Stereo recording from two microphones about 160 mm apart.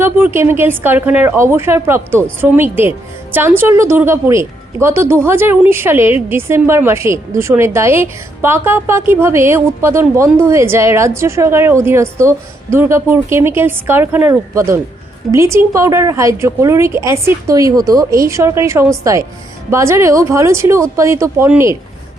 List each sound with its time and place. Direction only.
0.0 s a woman's voice: 15° right (ahead or behind)